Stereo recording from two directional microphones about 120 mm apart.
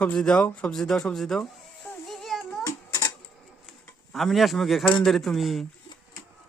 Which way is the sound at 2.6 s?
30° left (ahead or behind).